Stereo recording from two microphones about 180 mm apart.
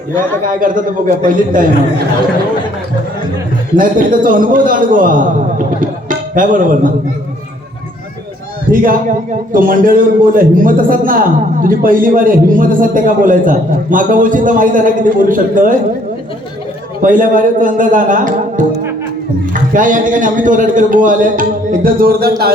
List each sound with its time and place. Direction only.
0.4 s a man's voice: 50° right (ahead or behind)
3.8 s a man's voice: 50° right (ahead or behind)
8.7 s a man's voice: 50° right (ahead or behind)
17.0 s a man's voice: 50° right (ahead or behind)
19.7 s a man's voice: 45° right (ahead or behind)